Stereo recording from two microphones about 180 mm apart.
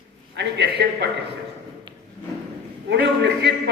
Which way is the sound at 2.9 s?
70° right (ahead or behind).